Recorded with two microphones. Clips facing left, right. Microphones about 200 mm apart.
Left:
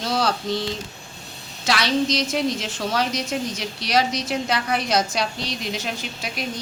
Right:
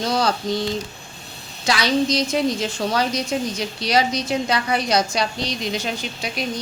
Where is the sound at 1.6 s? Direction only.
Centre (ahead or behind).